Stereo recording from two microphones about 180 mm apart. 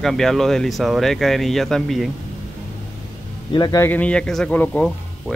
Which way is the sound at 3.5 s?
20° left (ahead or behind).